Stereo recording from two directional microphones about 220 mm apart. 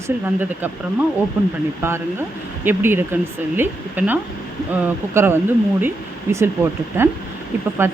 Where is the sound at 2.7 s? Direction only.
10° right (ahead or behind).